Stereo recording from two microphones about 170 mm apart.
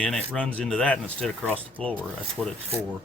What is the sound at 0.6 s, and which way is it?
Speech, 5° left (ahead or behind).